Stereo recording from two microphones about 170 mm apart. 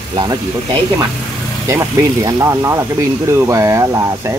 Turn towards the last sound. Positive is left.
turn(degrees=-15)  # may be behind; listen again after turning